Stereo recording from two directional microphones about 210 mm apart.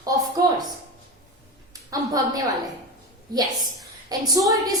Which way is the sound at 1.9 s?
20° right (ahead or behind).